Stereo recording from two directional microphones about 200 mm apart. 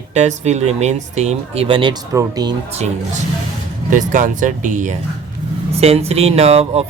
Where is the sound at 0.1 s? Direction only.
35° right (ahead or behind).